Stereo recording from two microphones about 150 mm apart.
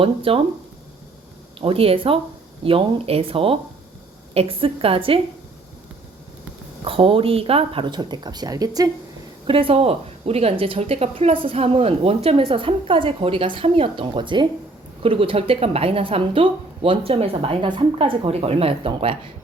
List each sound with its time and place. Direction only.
0.0 s speech: 35° right (ahead or behind)
1.6 s speech: 40° right (ahead or behind)
6.8 s speech: 35° right (ahead or behind)
9.5 s speech: 35° right (ahead or behind)